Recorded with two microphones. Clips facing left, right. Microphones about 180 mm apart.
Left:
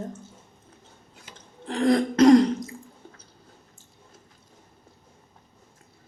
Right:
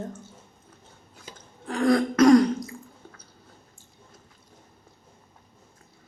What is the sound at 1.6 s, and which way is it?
Throat clearing, 20° left (ahead or behind).